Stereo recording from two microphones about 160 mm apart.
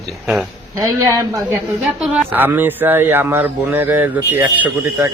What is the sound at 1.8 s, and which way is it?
A man's voice, 5° right (ahead or behind).